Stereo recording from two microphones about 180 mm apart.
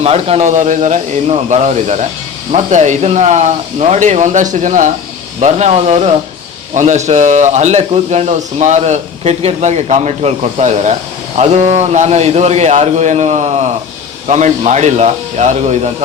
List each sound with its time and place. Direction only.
0.0 s speech: 35° right (ahead or behind)